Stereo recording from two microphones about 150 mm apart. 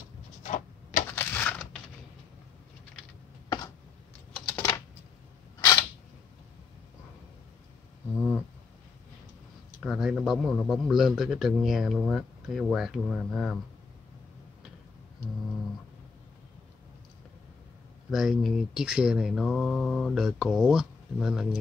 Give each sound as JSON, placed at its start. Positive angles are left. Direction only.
{"t": 0.4, "sound": "tick-tock", "side_deg": 55}
{"t": 1.1, "sound": "a sound", "side_deg": 10}
{"t": 4.3, "sound": "typing", "side_deg": 5}
{"t": 5.6, "sound": "camera", "side_deg": 20}
{"t": 8.2, "sound": "a sound", "side_deg": 15}
{"t": 9.8, "sound": "speech", "side_deg": 0}
{"t": 18.1, "sound": "speech", "side_deg": 0}